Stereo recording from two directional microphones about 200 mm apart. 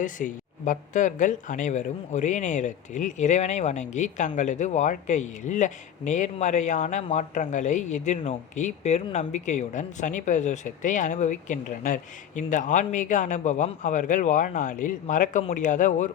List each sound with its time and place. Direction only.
0.0 s speech: 40° left (ahead or behind)